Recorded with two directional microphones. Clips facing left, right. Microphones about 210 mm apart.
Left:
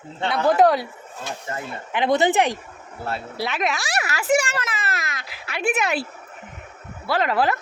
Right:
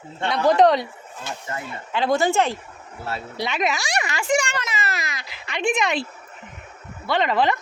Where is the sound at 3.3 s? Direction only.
5° left (ahead or behind).